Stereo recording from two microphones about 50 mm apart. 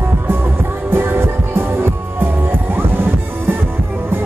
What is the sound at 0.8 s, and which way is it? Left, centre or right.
Music, right.